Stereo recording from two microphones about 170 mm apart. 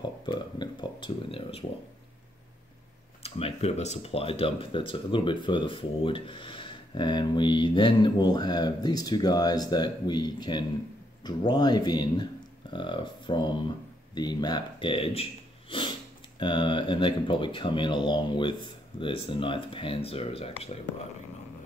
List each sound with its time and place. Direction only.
0.3 s speech: 25° left (ahead or behind)
3.3 s speech: 35° left (ahead or behind)
16.3 s speech: 25° left (ahead or behind)